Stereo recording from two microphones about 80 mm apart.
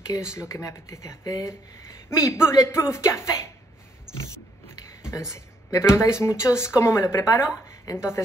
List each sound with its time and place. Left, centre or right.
0.2 s speech: left
5.0 s speech: left